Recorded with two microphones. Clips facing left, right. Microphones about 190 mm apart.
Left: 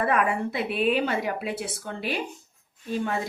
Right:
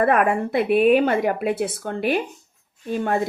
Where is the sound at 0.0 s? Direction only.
55° right (ahead or behind).